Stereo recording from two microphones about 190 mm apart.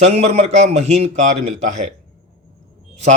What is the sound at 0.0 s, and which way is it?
A man's voice, 35° right (ahead or behind).